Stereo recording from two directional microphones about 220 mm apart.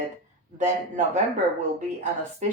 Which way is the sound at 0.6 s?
35° right (ahead or behind).